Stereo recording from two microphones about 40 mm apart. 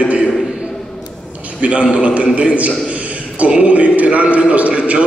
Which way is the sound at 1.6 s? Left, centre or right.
Right.